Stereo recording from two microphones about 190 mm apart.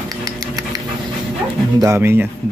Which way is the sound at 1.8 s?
15° right (ahead or behind).